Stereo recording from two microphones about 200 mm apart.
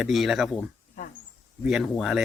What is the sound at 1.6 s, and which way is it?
Speech, centre (ahead or behind).